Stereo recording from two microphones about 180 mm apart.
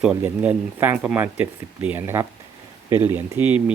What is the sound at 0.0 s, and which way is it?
Speech, 5° right (ahead or behind).